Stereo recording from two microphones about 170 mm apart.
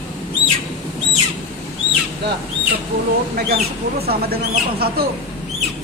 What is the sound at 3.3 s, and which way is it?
Speech, 65° right (ahead or behind).